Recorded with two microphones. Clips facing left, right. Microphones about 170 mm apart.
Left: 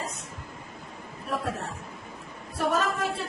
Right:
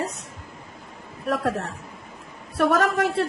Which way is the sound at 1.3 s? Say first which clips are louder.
Right 7 dB; 90° right.